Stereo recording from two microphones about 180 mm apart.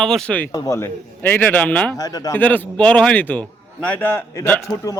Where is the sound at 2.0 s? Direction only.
20° left (ahead or behind).